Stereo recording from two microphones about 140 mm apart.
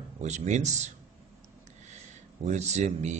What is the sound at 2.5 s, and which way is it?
Speech, 55° right (ahead or behind).